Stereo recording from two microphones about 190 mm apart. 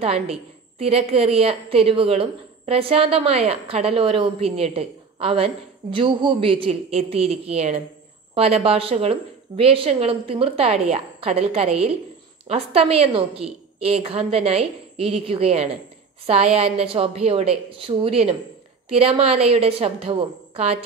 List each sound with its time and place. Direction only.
0.0 s a woman's voice: 30° right (ahead or behind)